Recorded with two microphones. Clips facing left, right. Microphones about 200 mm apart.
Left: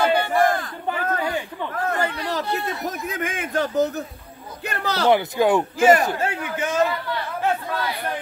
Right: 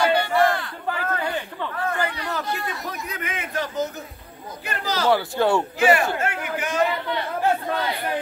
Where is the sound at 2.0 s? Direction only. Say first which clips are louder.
Left 2 dB; 35° left (ahead or behind).